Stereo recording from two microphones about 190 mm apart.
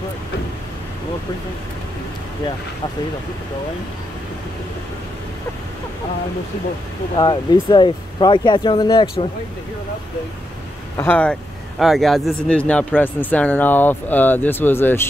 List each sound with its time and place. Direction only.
7.2 s speech: 25° left (ahead or behind)
11.0 s speech: 10° left (ahead or behind)